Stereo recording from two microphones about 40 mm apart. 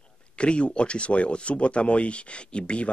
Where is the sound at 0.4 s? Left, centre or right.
Left.